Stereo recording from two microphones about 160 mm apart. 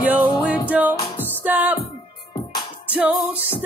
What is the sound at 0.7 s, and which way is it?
Music, 10° right (ahead or behind).